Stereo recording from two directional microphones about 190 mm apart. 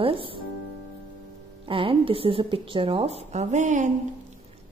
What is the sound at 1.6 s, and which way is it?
Speech, 30° right (ahead or behind).